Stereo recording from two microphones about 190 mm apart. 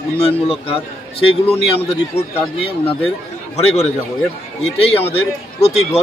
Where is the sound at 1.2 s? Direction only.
30° left (ahead or behind).